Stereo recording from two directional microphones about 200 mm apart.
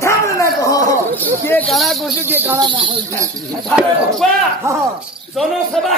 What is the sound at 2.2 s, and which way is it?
Speech, 10° right (ahead or behind).